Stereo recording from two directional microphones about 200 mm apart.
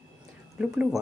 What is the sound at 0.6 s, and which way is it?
Speech, 5° right (ahead or behind).